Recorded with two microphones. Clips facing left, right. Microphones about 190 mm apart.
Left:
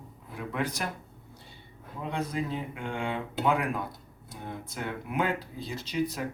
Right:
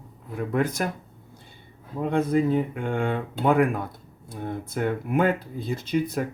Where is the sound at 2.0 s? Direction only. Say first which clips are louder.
Right 10 dB; 55° right (ahead or behind).